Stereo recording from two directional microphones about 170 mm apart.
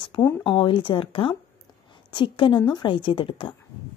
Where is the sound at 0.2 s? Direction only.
10° left (ahead or behind).